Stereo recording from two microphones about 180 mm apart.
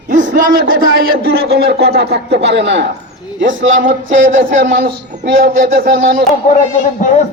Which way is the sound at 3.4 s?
90° right.